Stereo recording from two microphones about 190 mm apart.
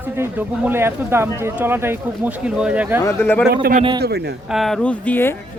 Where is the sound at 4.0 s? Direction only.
60° right (ahead or behind).